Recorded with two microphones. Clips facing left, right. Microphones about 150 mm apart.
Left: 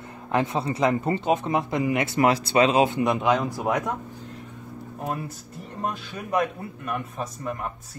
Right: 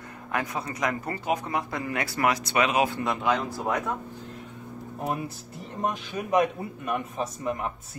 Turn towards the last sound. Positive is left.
turn(degrees=-5)  # may be behind; listen again after turning